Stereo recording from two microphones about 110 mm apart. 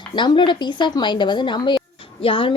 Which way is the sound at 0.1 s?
40° left (ahead or behind).